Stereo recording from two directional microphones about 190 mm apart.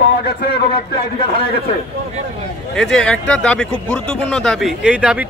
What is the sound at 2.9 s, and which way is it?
A man's voice, 5° left (ahead or behind).